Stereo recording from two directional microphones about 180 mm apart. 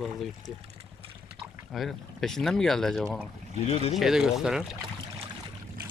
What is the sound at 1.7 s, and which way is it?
Speech, centre (ahead or behind).